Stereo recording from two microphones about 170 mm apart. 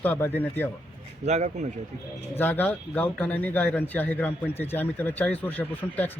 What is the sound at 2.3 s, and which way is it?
A man's voice, 10° left (ahead or behind).